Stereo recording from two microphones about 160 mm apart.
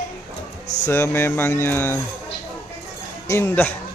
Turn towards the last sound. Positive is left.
turn(degrees=15)  # may be behind; listen again after turning